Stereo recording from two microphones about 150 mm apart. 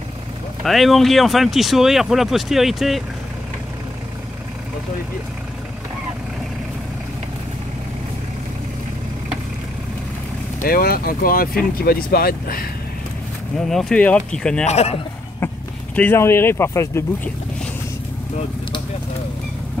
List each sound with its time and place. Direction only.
0.7 s speech: centre (ahead or behind)
10.6 s speech: 80° left
13.6 s speech: 5° left (ahead or behind)
14.7 s a man's voice: 45° left (ahead or behind)
15.4 s speech: 10° left (ahead or behind)